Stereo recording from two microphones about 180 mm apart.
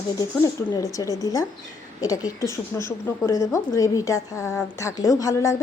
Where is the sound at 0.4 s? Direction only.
20° left (ahead or behind).